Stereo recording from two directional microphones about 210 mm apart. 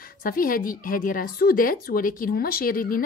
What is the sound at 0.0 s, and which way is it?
A woman's voice, 45° left (ahead or behind).